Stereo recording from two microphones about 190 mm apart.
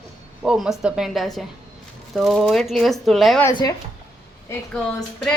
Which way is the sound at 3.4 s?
20° left (ahead or behind).